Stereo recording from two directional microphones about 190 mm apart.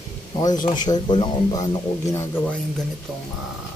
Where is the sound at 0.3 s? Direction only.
20° left (ahead or behind).